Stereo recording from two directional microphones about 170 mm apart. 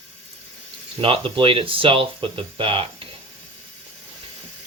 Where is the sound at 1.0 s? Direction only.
30° right (ahead or behind).